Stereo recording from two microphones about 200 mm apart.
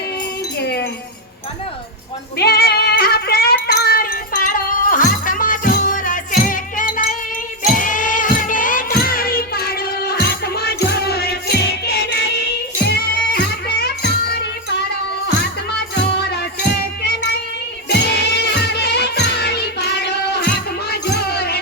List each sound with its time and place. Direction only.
0.6 s music: 55° left (ahead or behind)
2.4 s a sound: 50° left (ahead or behind)
3.8 s music: 45° left (ahead or behind)
17.8 s music: 55° left (ahead or behind)